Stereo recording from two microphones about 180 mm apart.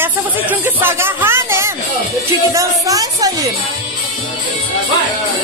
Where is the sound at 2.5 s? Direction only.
20° right (ahead or behind).